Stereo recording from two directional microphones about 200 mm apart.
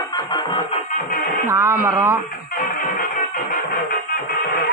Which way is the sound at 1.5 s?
15° right (ahead or behind).